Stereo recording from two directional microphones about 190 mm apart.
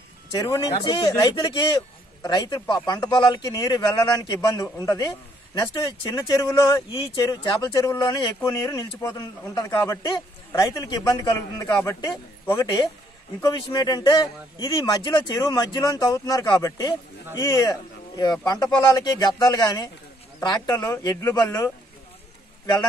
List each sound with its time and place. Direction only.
0.3 s a man's voice: 20° left (ahead or behind)